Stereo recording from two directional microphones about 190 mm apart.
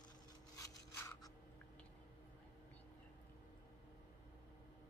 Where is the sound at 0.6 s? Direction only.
15° left (ahead or behind).